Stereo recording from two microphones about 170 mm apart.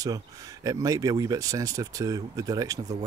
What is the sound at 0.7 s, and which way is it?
Speech, 20° right (ahead or behind).